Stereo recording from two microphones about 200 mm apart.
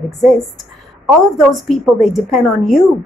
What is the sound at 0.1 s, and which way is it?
A woman's voice, centre (ahead or behind).